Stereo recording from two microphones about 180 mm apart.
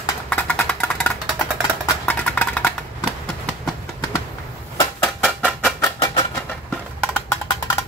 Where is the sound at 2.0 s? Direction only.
10° left (ahead or behind).